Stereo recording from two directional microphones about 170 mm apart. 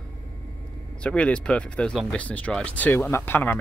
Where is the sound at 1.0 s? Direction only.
5° left (ahead or behind).